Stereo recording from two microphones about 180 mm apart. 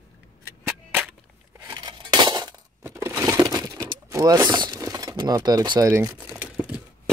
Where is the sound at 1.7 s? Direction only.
25° right (ahead or behind).